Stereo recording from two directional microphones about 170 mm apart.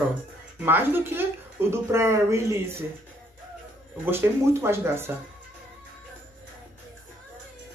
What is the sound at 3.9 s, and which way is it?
Speech, 10° right (ahead or behind).